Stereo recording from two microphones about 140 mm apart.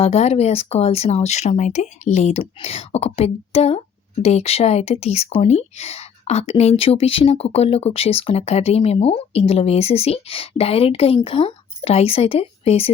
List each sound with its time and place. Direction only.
0.0 s speech: 50° left (ahead or behind)
2.4 s speech: 45° left (ahead or behind)